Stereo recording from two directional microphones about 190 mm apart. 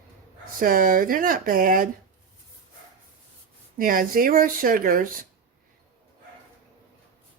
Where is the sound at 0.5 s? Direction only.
50° right (ahead or behind).